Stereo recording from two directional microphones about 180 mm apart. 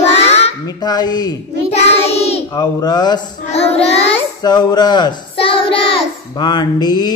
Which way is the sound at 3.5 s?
35° left (ahead or behind).